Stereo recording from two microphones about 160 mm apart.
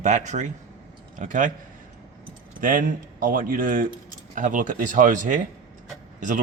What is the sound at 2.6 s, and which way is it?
Speech, 60° right (ahead or behind).